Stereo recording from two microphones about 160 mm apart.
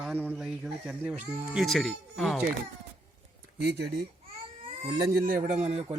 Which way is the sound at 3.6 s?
90° right.